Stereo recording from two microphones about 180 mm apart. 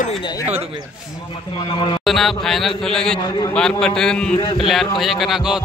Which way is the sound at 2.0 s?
Centre (ahead or behind).